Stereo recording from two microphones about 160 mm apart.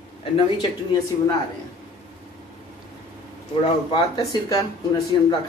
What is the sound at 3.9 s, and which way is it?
Speech, 35° left (ahead or behind).